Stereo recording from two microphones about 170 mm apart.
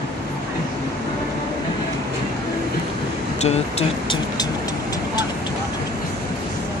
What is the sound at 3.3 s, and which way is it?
Speech, 40° left (ahead or behind).